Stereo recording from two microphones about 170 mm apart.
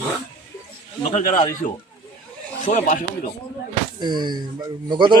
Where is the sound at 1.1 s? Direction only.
50° left (ahead or behind).